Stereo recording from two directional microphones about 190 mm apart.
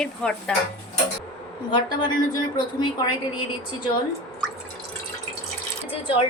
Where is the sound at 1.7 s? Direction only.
25° left (ahead or behind).